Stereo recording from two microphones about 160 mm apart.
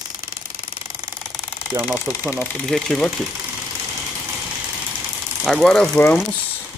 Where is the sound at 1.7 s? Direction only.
10° right (ahead or behind).